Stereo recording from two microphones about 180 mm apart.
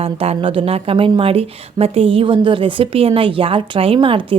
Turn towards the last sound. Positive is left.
turn(degrees=-30)  # may be behind; listen again after turning